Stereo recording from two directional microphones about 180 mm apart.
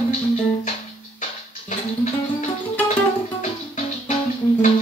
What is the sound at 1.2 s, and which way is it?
Music, 40° left (ahead or behind).